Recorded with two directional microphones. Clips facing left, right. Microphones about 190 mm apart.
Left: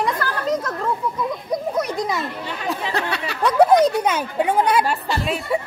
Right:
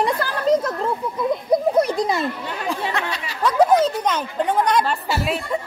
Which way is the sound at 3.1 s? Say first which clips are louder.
Left 3 dB; 65° left (ahead or behind).